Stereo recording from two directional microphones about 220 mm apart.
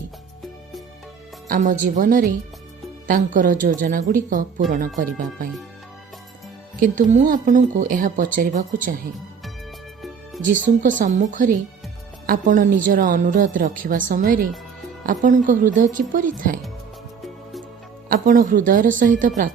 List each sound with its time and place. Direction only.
1.5 s a woman's voice: 35° right (ahead or behind)
6.7 s a woman's voice: 35° right (ahead or behind)
10.4 s a woman's voice: 35° right (ahead or behind)
18.1 s a woman's voice: 40° right (ahead or behind)